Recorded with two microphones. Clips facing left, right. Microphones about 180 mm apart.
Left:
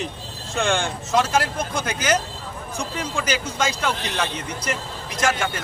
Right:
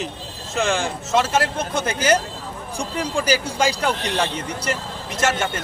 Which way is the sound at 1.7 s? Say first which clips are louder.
Right 4 dB; 30° right (ahead or behind).